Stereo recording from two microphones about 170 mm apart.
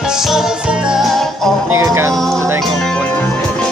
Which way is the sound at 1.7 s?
15° right (ahead or behind).